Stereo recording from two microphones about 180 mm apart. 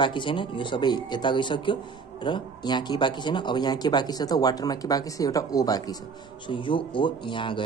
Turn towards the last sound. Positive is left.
turn(degrees=25)  # may be behind; listen again after turning